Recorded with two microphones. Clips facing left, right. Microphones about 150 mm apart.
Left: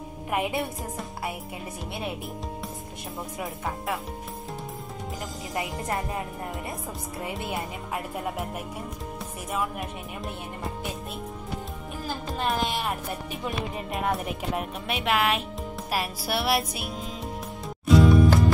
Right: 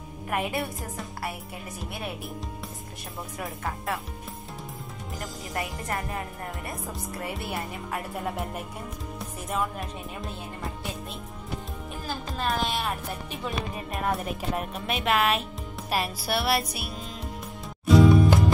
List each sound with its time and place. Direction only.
0.3 s speech: 20° left (ahead or behind)
3.3 s music: centre (ahead or behind)
5.5 s speech: 20° left (ahead or behind)
7.2 s speech: 15° left (ahead or behind)
9.5 s music: 5° left (ahead or behind)
12.4 s speech: 10° left (ahead or behind)
14.2 s speech: 10° left (ahead or behind)
17.8 s music: centre (ahead or behind)